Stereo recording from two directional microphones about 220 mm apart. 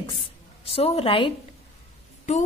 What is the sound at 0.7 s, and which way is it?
Speech, 25° left (ahead or behind).